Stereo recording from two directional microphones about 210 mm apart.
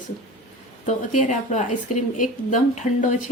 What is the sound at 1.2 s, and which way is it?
A woman's voice, 35° left (ahead or behind).